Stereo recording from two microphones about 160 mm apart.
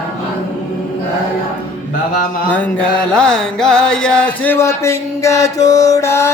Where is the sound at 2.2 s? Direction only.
60° left (ahead or behind).